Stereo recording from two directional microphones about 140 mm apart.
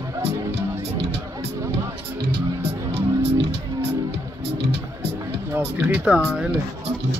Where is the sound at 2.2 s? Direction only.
45° right (ahead or behind).